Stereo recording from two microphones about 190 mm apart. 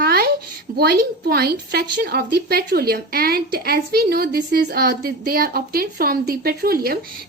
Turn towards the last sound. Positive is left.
turn(degrees=-50)  # may be behind; listen again after turning